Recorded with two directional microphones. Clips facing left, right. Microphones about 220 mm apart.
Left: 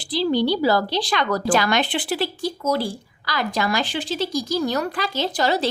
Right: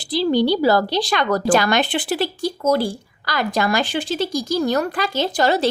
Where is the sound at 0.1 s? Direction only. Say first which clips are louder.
Right 3 dB; 45° right (ahead or behind).